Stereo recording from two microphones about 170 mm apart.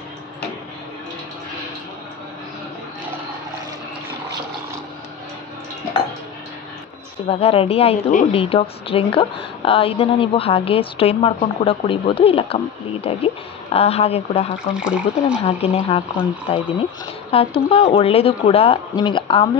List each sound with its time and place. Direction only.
7.2 s a woman's voice: 35° left (ahead or behind)